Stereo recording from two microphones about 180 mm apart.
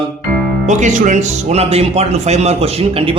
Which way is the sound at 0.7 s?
40° right (ahead or behind).